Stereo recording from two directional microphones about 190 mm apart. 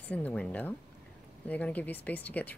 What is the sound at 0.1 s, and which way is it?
Speech, 5° left (ahead or behind).